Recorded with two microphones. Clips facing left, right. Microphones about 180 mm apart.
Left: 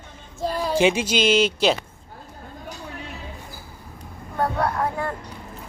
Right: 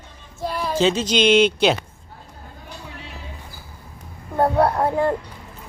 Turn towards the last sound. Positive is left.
turn(degrees=-30)  # may be behind; listen again after turning